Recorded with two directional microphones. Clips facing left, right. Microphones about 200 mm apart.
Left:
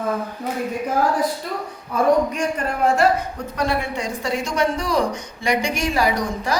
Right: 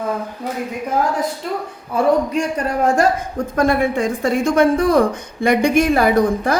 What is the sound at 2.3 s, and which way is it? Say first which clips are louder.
Speech: right 4 dB; 40° right (ahead or behind).